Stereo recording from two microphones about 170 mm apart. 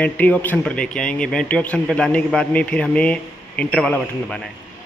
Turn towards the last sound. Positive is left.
turn(degrees=5)  # may be behind; listen again after turning